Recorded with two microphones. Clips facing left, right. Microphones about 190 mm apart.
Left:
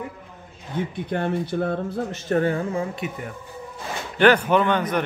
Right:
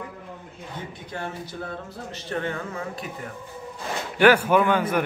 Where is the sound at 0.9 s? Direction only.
60° left (ahead or behind); by 2.8 s 35° left (ahead or behind).